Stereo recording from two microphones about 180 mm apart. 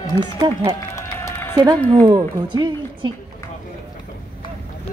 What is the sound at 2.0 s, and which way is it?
A woman's voice, 25° right (ahead or behind).